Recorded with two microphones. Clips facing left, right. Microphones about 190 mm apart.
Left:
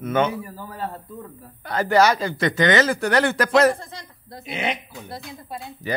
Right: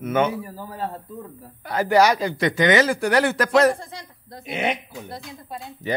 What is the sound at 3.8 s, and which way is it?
Speech, 10° right (ahead or behind).